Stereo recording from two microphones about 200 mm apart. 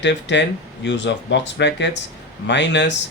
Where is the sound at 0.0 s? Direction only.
60° left (ahead or behind).